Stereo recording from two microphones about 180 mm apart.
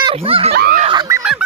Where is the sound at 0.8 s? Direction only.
25° right (ahead or behind).